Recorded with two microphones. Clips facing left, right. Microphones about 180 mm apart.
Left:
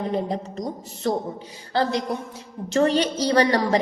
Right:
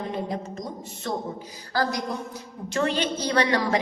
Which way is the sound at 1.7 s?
25° left (ahead or behind).